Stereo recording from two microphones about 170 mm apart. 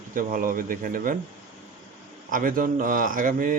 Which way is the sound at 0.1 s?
55° right (ahead or behind).